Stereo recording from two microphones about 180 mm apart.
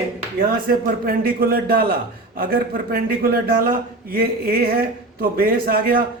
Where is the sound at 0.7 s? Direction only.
55° right (ahead or behind).